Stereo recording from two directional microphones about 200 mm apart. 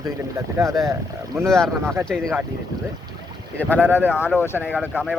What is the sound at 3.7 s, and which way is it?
Speech, 10° left (ahead or behind).